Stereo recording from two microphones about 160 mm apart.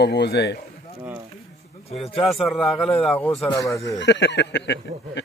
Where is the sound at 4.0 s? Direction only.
90° left.